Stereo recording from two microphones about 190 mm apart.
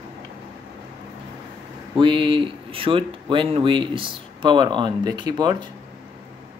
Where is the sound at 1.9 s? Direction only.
25° right (ahead or behind).